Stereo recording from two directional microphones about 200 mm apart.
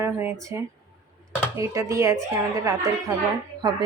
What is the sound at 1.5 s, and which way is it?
Speech, 15° right (ahead or behind).